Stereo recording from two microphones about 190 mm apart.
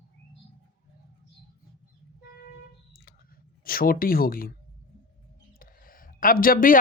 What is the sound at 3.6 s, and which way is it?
Speech, 50° left (ahead or behind).